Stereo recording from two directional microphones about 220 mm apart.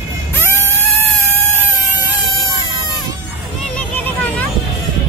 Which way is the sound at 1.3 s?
10° left (ahead or behind).